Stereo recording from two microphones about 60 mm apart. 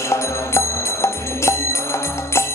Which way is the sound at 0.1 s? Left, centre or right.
Left.